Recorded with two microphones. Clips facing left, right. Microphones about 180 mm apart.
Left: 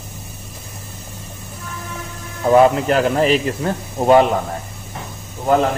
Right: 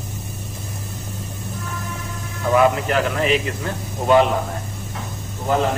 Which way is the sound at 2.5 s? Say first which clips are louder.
Left 4 dB; 35° left (ahead or behind).